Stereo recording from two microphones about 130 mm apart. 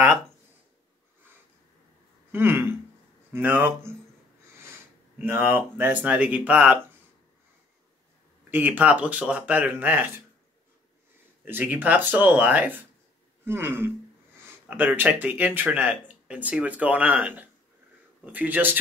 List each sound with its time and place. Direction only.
2.3 s speech: 15° right (ahead or behind)
5.2 s speech: 15° right (ahead or behind)
8.5 s speech: 15° right (ahead or behind)
11.4 s speech: 15° right (ahead or behind)